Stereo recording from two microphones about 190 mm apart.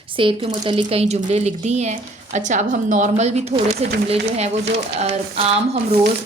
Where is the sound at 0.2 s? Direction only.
25° right (ahead or behind).